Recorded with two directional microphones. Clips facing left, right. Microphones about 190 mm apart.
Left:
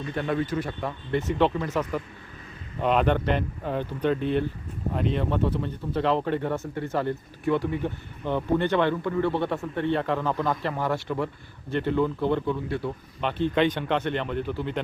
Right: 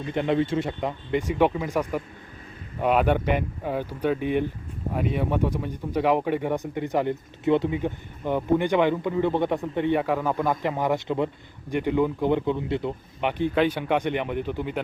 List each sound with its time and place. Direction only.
0.1 s speech: 20° right (ahead or behind)